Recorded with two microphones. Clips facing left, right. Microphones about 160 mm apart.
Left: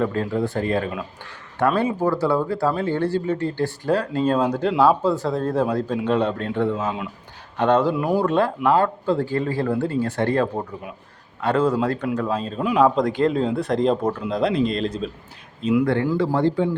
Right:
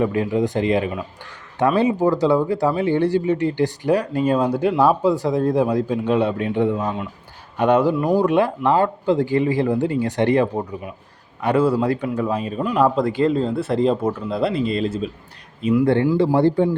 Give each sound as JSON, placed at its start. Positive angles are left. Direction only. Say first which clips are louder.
{"t": 0.0, "sound": "speech", "louder": "right 3 dB", "side_deg": -15}
{"t": 6.8, "sound": "speech", "louder": "right 1 dB", "side_deg": 5}
{"t": 7.5, "sound": "speech", "louder": "right 2 dB", "side_deg": -10}
{"t": 7.9, "sound": "speech", "louder": "right 3 dB", "side_deg": 5}
{"t": 8.2, "sound": "speech", "louder": "right 2 dB", "side_deg": -15}
{"t": 15.8, "sound": "speech", "louder": "right 5 dB", "side_deg": -25}
{"t": 16.4, "sound": "a man's voice", "louder": "right 3 dB", "side_deg": -35}